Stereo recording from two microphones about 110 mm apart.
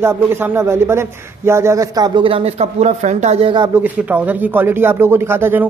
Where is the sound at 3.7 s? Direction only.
15° right (ahead or behind).